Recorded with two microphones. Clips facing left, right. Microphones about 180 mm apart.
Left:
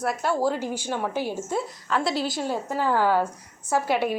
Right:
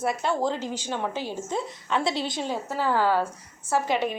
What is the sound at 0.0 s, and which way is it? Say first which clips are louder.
A woman's voice: left 1 dB; 5° left (ahead or behind).